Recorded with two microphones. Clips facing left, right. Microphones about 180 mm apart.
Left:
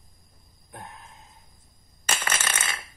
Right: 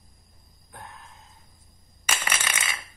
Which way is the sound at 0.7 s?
15° left (ahead or behind).